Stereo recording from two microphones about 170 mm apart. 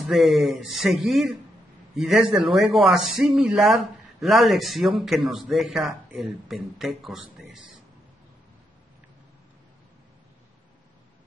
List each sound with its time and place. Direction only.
0.0 s speech: centre (ahead or behind)